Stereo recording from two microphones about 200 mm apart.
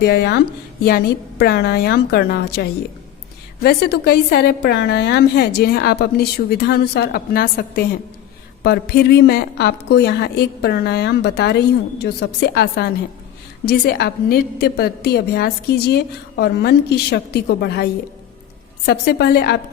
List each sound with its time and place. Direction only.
0.0 s a woman's voice: 55° left (ahead or behind)
18.9 s a woman's voice: 55° left (ahead or behind)